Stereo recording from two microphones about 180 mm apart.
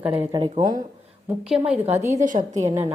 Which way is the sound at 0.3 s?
25° right (ahead or behind).